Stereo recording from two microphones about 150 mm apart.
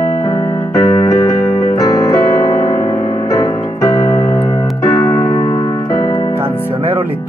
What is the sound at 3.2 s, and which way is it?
Keyboard, 25° left (ahead or behind).